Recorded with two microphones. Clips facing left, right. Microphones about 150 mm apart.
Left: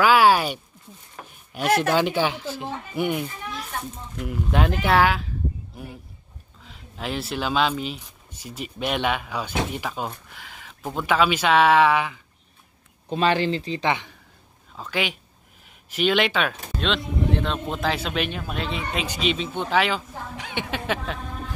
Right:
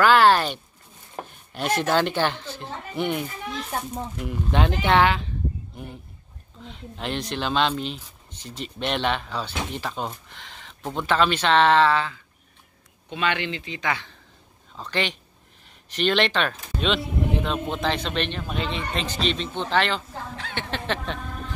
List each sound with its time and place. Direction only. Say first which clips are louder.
0.0 s a sound: even; 10° left (ahead or behind)
1.8 s speech: right 2 dB; 5° left (ahead or behind)
13.1 s speech: left 5 dB; 35° left (ahead or behind)
14.8 s speech: even; 5° left (ahead or behind)